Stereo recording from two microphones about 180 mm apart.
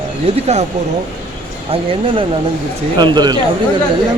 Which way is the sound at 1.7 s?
30° right (ahead or behind).